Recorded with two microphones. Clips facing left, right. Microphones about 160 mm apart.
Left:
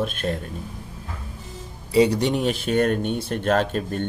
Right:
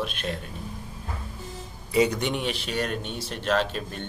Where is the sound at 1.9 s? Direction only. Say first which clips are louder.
Left 5 dB; 35° left (ahead or behind).